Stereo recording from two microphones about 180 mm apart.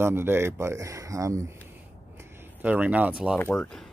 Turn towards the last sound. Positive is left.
turn(degrees=5)  # may be behind; listen again after turning